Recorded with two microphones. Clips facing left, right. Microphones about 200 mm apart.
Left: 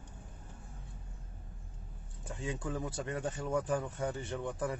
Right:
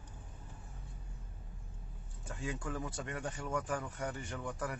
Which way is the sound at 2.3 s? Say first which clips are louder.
Left 2 dB; 20° left (ahead or behind).